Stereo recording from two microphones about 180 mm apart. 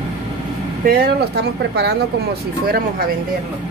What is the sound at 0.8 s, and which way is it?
Speech, 65° right (ahead or behind).